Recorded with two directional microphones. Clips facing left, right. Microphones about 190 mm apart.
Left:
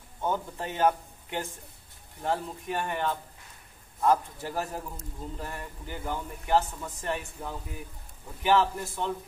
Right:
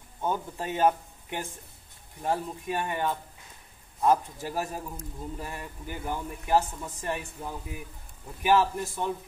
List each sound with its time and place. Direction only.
0.2 s a man's voice: 15° right (ahead or behind)